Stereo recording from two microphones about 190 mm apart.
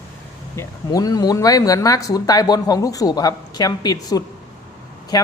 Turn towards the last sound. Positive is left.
turn(degrees=20)  # may be behind; listen again after turning